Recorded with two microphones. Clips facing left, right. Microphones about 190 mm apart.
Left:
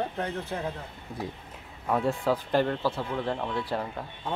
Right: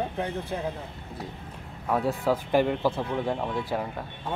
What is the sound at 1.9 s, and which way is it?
Speech, 5° right (ahead or behind).